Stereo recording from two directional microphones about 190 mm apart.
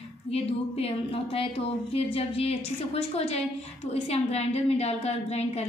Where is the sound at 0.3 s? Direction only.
30° left (ahead or behind).